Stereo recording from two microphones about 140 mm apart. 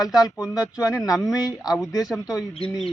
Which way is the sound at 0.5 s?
5° right (ahead or behind).